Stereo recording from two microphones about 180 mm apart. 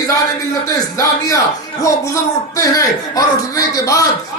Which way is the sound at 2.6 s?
20° left (ahead or behind).